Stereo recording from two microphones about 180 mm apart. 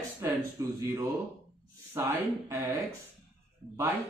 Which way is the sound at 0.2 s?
15° right (ahead or behind).